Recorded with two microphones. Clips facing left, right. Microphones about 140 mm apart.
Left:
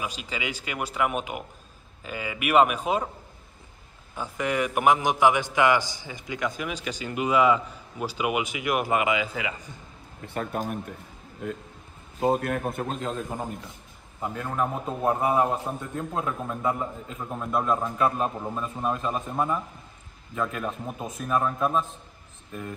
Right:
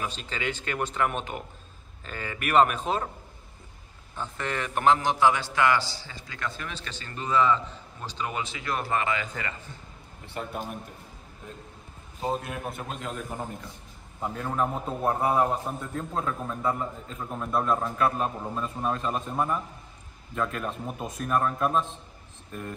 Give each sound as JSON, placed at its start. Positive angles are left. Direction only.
{"t": 0.0, "sound": "a man's voice", "side_deg": 10}
{"t": 4.2, "sound": "a man's voice", "side_deg": 10}
{"t": 10.2, "sound": "a man's voice", "side_deg": 50}
{"t": 12.2, "sound": "a man's voice", "side_deg": 55}
{"t": 13.1, "sound": "a man's voice", "side_deg": 20}
{"t": 14.2, "sound": "speech", "side_deg": 5}
{"t": 15.0, "sound": "a man's voice", "side_deg": 15}
{"t": 17.2, "sound": "speech", "side_deg": 10}
{"t": 17.8, "sound": "a man's voice", "side_deg": 15}
{"t": 18.2, "sound": "a man's voice", "side_deg": 5}